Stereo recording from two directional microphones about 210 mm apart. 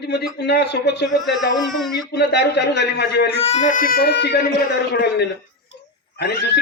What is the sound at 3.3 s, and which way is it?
Speech, 30° left (ahead or behind).